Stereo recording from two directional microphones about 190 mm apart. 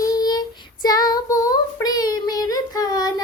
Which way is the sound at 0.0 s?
20° left (ahead or behind).